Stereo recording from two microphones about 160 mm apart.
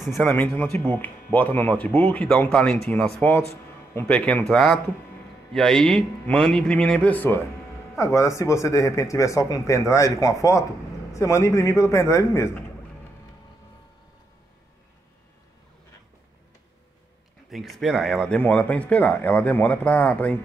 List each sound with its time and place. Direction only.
0.0 s a man's voice: 5° left (ahead or behind)
17.5 s speech: centre (ahead or behind)